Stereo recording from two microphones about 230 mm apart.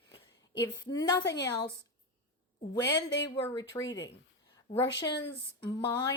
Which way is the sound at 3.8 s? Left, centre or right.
Left.